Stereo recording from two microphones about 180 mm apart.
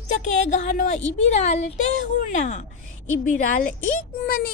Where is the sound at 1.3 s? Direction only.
40° left (ahead or behind).